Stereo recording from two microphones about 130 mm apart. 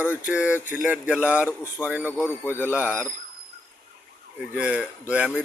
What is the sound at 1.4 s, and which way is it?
Speech, 20° left (ahead or behind).